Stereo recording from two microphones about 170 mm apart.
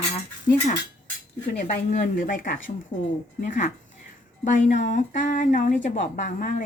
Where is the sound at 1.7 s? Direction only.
45° left (ahead or behind).